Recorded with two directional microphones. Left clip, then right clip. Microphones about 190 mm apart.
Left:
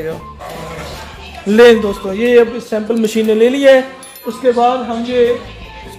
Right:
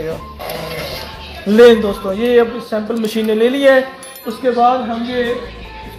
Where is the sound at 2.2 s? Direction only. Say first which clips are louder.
Left 3 dB; 25° left (ahead or behind).